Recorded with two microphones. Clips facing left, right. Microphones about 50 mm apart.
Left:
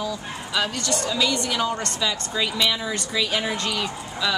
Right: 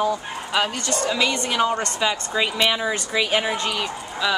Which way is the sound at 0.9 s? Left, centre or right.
Right.